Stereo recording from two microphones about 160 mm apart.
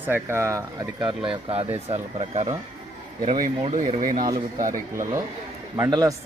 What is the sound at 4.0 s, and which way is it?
Speech, 60° right (ahead or behind).